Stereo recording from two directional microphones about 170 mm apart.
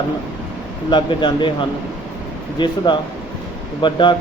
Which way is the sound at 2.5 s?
25° left (ahead or behind).